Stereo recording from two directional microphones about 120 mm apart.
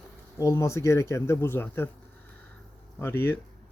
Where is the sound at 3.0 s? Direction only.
20° left (ahead or behind).